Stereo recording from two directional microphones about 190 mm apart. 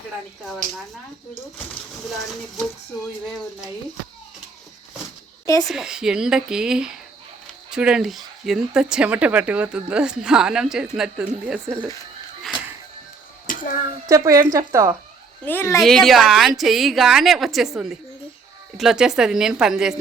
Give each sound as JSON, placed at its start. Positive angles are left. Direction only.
{"t": 0.4, "sound": "a woman's voice", "side_deg": 0}
{"t": 5.6, "sound": "a woman's voice", "side_deg": -5}
{"t": 13.5, "sound": "a sound", "side_deg": 45}
{"t": 14.1, "sound": "speech", "side_deg": -15}
{"t": 15.4, "sound": "speech", "side_deg": 10}
{"t": 15.8, "sound": "a woman's voice", "side_deg": 0}